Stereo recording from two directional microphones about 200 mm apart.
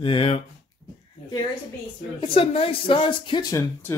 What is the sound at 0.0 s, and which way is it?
Speech, 25° left (ahead or behind).